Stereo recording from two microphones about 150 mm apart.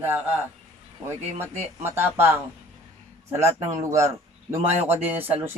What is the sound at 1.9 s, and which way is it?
Speech, 15° right (ahead or behind).